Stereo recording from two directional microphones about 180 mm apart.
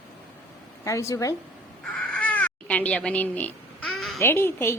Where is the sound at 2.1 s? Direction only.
10° left (ahead or behind).